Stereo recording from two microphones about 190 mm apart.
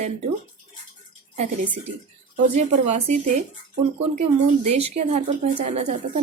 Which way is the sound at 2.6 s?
35° right (ahead or behind).